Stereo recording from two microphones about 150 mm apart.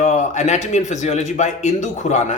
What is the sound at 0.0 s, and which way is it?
A man's voice, 55° left (ahead or behind).